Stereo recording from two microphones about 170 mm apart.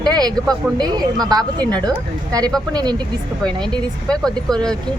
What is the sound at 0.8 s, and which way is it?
Speech, 25° right (ahead or behind).